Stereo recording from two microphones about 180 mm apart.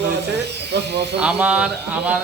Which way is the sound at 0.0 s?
70° right (ahead or behind).